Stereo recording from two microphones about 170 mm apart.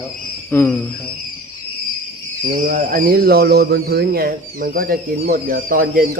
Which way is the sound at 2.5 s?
55° right (ahead or behind).